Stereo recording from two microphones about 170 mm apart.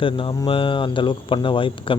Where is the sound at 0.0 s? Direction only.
30° left (ahead or behind).